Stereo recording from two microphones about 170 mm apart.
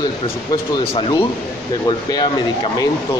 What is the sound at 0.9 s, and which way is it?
Speech, 30° left (ahead or behind).